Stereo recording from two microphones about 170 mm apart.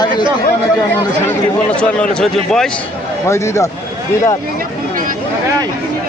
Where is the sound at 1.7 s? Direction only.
5° left (ahead or behind).